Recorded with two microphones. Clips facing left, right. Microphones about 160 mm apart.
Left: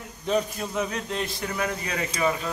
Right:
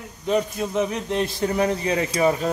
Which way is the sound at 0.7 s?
25° right (ahead or behind).